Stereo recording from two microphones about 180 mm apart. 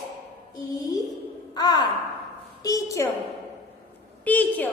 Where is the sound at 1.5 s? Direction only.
20° left (ahead or behind).